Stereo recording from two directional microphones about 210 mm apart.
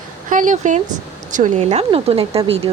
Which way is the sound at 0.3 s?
40° right (ahead or behind).